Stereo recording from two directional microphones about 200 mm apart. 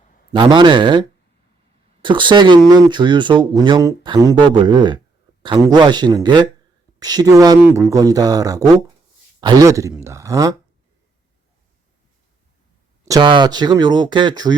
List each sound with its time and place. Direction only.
0.3 s speech: 25° right (ahead or behind)
13.1 s speech: 20° right (ahead or behind)